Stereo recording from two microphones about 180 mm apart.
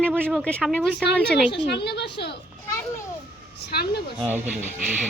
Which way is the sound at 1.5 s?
70° left (ahead or behind).